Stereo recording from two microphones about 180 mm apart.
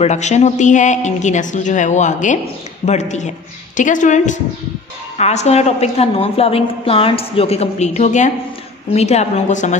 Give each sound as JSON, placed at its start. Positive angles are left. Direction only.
{"t": 0.0, "sound": "a woman's voice", "side_deg": 40}